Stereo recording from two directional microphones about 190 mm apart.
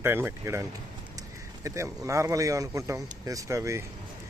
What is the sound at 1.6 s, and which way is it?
Speech, 15° right (ahead or behind).